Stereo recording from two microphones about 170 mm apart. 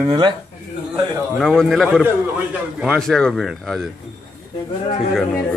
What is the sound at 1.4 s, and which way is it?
Speech, centre (ahead or behind).